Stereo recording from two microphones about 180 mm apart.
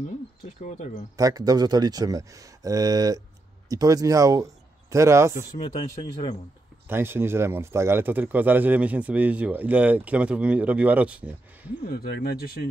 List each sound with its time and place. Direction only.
0.6 s speech: 40° left (ahead or behind)
1.1 s speech: 20° right (ahead or behind)
6.9 s speech: 10° right (ahead or behind)
11.8 s speech: 60° left (ahead or behind)